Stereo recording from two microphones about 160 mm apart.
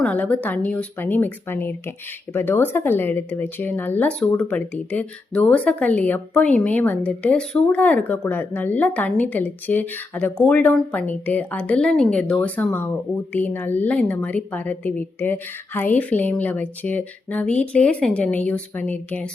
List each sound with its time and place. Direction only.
0.0 s speech: 10° left (ahead or behind)